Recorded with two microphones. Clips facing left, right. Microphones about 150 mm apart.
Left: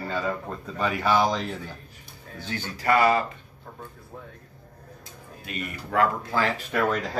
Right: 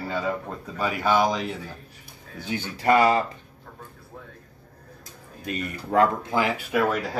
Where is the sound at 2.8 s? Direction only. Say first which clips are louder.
Right 2 dB; 25° right (ahead or behind).